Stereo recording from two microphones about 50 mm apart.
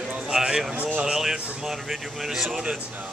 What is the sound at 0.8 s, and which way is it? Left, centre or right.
Speech, right.